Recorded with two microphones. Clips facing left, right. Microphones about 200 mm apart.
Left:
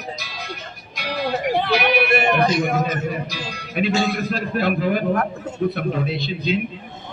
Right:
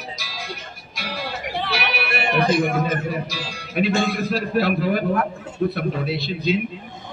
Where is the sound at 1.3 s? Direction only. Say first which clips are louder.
Left 9 dB; 45° left (ahead or behind).